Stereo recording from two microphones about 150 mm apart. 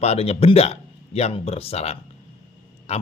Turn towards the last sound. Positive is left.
turn(degrees=45)  # may be behind; listen again after turning